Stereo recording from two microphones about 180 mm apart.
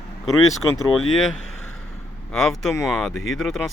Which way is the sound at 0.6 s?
20° left (ahead or behind).